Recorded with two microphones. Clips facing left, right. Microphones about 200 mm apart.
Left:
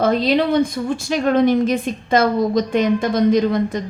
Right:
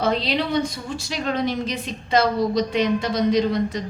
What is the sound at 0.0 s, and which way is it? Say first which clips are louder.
A woman's voice: left 6 dB; 50° left (ahead or behind).